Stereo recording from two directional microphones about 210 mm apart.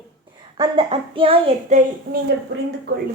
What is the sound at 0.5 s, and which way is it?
Child singing, 25° right (ahead or behind).